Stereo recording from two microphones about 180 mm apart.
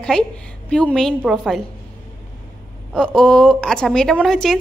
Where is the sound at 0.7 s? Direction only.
5° left (ahead or behind).